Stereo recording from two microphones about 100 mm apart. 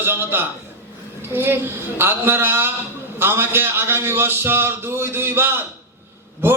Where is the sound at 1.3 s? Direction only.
20° right (ahead or behind).